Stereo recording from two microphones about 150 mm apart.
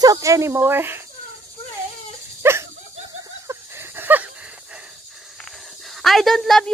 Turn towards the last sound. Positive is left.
turn(degrees=5)  # may be behind; listen again after turning